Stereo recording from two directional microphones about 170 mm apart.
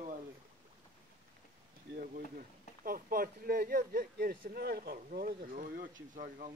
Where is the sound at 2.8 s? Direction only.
55° right (ahead or behind).